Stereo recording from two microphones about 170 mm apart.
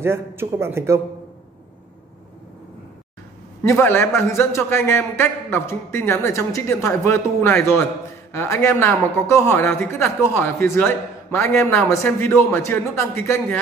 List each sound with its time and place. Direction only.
0.0 s a man's voice: 15° right (ahead or behind)
3.6 s a man's voice: 15° left (ahead or behind)